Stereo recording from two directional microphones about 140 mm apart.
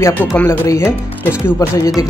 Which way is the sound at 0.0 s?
15° left (ahead or behind).